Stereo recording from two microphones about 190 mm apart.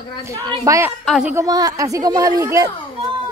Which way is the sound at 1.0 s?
Centre (ahead or behind).